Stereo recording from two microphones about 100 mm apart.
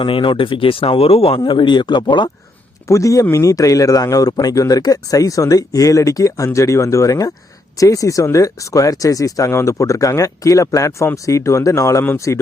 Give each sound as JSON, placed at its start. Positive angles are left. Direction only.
{"t": 0.0, "sound": "speech", "side_deg": 55}
{"t": 1.5, "sound": "speech", "side_deg": 50}
{"t": 2.8, "sound": "speech", "side_deg": 30}